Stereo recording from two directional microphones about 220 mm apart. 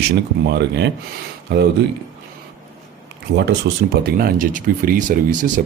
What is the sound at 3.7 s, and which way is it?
Speech, 50° right (ahead or behind).